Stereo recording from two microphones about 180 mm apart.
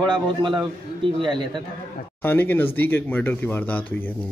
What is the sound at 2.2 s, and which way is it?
Speech, 10° left (ahead or behind).